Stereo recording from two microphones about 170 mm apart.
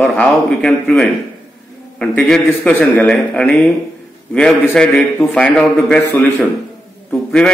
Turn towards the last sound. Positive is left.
turn(degrees=5)  # may be behind; listen again after turning